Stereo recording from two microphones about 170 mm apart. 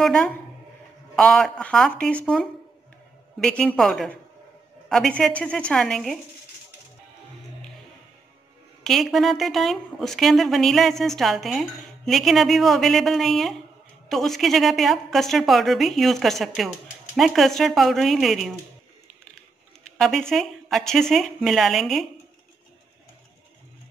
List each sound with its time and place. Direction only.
0.0 s speech: 5° left (ahead or behind)
8.8 s speech: centre (ahead or behind)
20.0 s speech: centre (ahead or behind)